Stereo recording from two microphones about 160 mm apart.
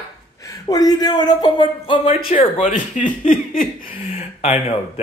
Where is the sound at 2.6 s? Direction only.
55° left (ahead or behind).